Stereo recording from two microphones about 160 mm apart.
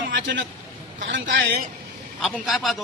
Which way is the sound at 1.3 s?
90° right.